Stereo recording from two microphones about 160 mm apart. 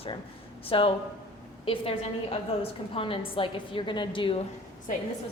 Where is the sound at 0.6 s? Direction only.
35° left (ahead or behind).